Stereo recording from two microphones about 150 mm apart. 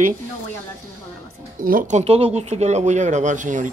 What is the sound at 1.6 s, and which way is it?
Speech, 65° right (ahead or behind).